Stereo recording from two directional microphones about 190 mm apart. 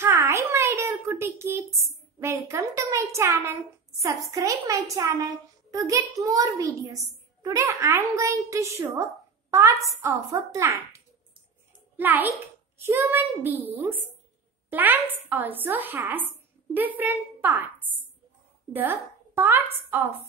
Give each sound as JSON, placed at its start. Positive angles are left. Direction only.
{"t": 0.0, "sound": "a child's voice", "side_deg": -15}
{"t": 12.0, "sound": "a child's voice", "side_deg": -10}
{"t": 18.7, "sound": "a woman's voice", "side_deg": -10}